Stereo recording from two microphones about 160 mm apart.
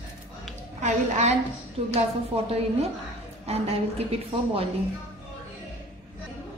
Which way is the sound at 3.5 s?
40° right (ahead or behind).